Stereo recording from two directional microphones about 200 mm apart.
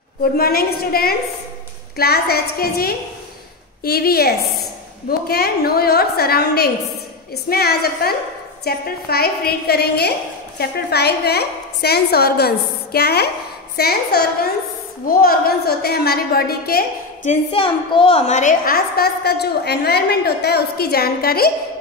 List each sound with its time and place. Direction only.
0.2 s a woman's voice: 50° left (ahead or behind)
17.3 s a woman's voice: 25° left (ahead or behind); by 21.5 s 50° left (ahead or behind)